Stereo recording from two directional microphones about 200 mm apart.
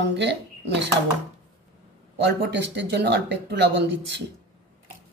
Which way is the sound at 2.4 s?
55° right (ahead or behind).